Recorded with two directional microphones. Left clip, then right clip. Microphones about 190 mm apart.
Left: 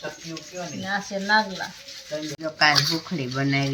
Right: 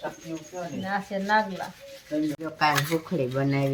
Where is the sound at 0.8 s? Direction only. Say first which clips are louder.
Left 2 dB; 15° right (ahead or behind).